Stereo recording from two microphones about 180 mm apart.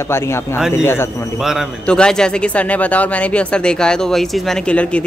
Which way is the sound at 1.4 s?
Centre (ahead or behind).